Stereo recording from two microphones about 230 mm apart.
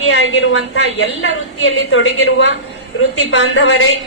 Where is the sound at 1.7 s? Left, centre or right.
Left.